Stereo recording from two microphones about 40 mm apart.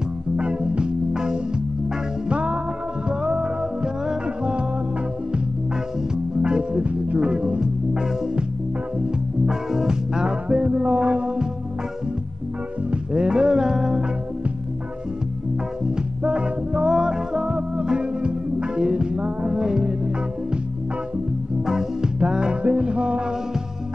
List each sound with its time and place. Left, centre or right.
0.4 s music: right
6.4 s music: right
9.5 s music: centre
10.5 s music: right
12.9 s music: right
15.8 s music: right
21.6 s music: centre